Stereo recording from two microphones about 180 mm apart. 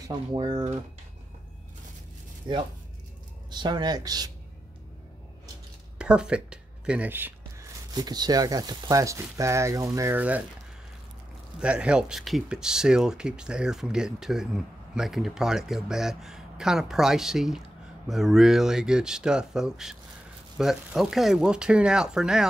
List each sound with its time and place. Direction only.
0.3 s speech: 25° right (ahead or behind)
2.4 s speech: 25° right (ahead or behind)
5.9 s speech: 5° right (ahead or behind)
7.9 s speech: 20° right (ahead or behind)
11.6 s speech: 5° right (ahead or behind)